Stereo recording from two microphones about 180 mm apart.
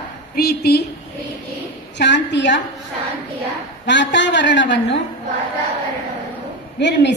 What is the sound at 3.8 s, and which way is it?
A woman's voice, 80° left.